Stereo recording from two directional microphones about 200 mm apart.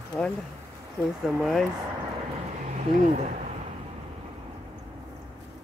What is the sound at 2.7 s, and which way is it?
Speech, 35° right (ahead or behind).